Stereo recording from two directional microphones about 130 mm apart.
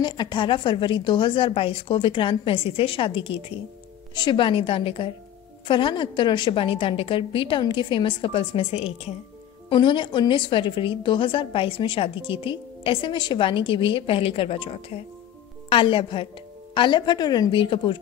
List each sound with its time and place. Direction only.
0.0 s a woman's voice: 35° left (ahead or behind)
9.7 s a woman's voice: 40° left (ahead or behind)